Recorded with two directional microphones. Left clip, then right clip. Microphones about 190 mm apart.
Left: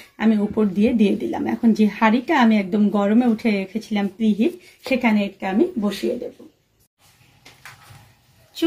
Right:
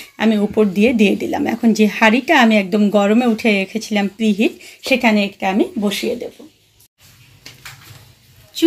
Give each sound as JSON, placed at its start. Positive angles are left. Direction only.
{"t": 0.1, "sound": "speech", "side_deg": -25}